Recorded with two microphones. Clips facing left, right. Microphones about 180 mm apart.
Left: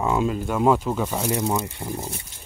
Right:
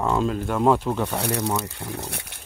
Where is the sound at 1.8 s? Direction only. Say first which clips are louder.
Left 2 dB; 70° right (ahead or behind).